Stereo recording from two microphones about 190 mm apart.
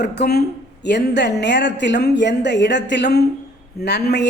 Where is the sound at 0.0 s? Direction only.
60° left (ahead or behind).